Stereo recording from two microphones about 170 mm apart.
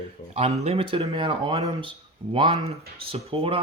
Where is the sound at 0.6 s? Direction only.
35° right (ahead or behind).